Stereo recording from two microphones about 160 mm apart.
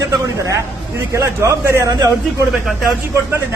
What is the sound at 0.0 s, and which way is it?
A man's voice, 20° right (ahead or behind).